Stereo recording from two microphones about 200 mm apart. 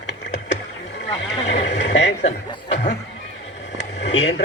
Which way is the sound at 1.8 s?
60° left (ahead or behind).